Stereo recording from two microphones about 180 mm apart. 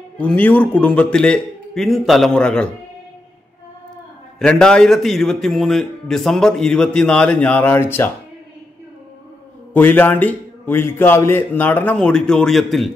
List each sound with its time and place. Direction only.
0.2 s a man's voice: 10° left (ahead or behind)
4.4 s a man's voice: 5° left (ahead or behind)
9.8 s a man's voice: 10° left (ahead or behind)